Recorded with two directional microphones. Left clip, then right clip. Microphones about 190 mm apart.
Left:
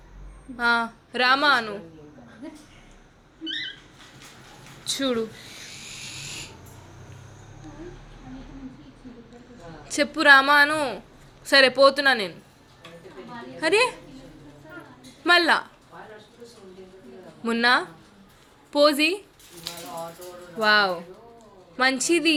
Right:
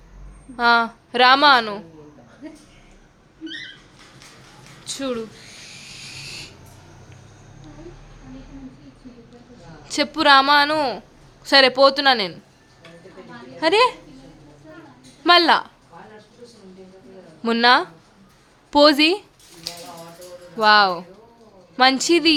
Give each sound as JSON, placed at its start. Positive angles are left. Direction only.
{"t": 0.5, "sound": "a woman's voice", "side_deg": -30}
{"t": 4.9, "sound": "speech", "side_deg": 0}
{"t": 9.9, "sound": "a woman's voice", "side_deg": -20}
{"t": 13.6, "sound": "a woman's voice", "side_deg": -20}
{"t": 15.2, "sound": "speech", "side_deg": -20}
{"t": 17.4, "sound": "a woman's voice", "side_deg": -30}
{"t": 20.6, "sound": "a woman's voice", "side_deg": -20}